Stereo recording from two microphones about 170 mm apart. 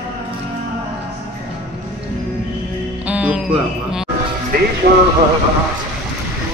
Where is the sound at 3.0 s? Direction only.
10° right (ahead or behind).